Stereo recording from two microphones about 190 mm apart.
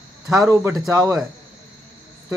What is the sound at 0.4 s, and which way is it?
Speech, 15° right (ahead or behind).